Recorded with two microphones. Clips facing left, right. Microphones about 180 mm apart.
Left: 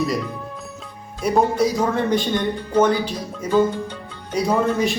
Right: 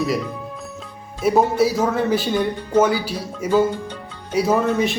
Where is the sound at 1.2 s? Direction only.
5° right (ahead or behind).